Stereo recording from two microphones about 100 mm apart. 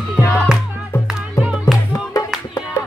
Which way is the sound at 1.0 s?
5° right (ahead or behind).